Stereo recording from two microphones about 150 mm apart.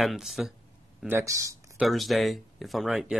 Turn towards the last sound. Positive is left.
turn(degrees=0)  # may be behind; listen again after turning